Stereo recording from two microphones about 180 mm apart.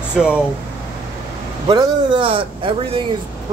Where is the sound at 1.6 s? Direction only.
25° right (ahead or behind).